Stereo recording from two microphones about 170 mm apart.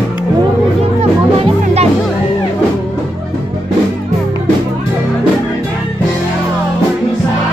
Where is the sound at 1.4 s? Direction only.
40° right (ahead or behind).